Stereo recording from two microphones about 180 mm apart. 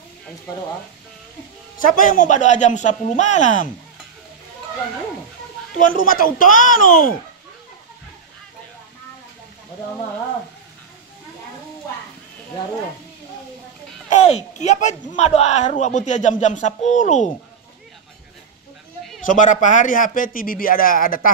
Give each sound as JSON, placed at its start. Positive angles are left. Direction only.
{"t": 2.0, "sound": "a man's voice", "side_deg": 50}
{"t": 5.8, "sound": "a man's voice", "side_deg": 50}
{"t": 14.0, "sound": "speech", "side_deg": 40}
{"t": 19.2, "sound": "a man's voice", "side_deg": 45}